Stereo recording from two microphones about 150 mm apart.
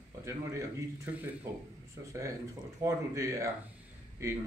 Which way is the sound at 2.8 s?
20° right (ahead or behind).